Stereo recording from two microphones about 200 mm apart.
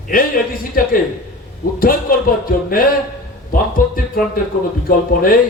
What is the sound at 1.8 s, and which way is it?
A man's voice, 45° left (ahead or behind).